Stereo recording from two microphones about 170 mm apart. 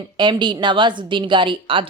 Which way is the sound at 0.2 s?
25° right (ahead or behind).